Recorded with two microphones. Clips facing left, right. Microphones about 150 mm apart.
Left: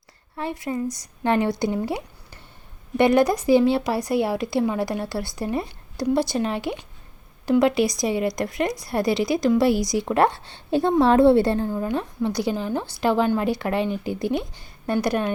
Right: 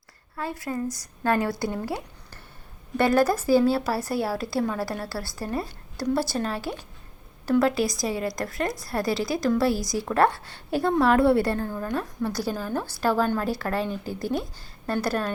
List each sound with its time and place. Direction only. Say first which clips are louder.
0.3 s a woman's voice: left 3 dB; 20° left (ahead or behind)